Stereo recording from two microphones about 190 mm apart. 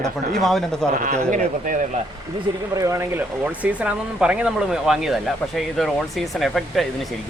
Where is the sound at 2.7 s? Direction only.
15° right (ahead or behind).